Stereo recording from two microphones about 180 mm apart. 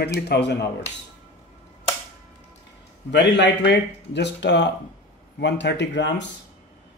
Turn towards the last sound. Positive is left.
turn(degrees=80)